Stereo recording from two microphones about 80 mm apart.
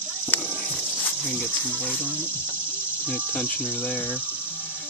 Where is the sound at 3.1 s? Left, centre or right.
Left.